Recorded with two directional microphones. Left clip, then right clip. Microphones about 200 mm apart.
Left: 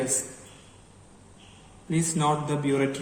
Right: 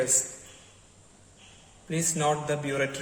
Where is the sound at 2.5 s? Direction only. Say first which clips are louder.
Left 2 dB; 40° right (ahead or behind).